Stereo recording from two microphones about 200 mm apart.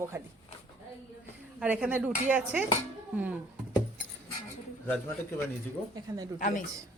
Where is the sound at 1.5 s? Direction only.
5° right (ahead or behind).